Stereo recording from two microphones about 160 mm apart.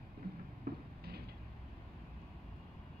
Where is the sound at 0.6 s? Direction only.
80° right.